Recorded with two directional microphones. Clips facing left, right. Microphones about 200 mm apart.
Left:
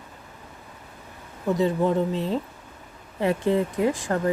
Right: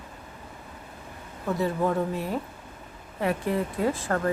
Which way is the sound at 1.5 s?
20° left (ahead or behind).